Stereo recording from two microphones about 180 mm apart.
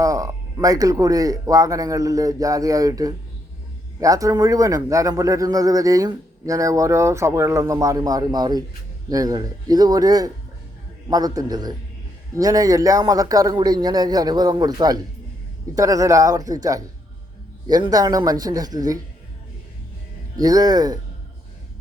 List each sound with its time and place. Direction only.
0.0 s speech: 20° right (ahead or behind)
20.3 s speech: 20° right (ahead or behind)